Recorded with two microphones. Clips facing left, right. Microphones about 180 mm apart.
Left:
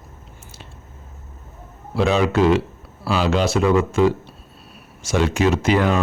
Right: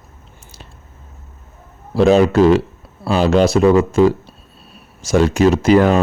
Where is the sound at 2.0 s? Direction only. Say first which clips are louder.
Right 6 dB; 40° right (ahead or behind).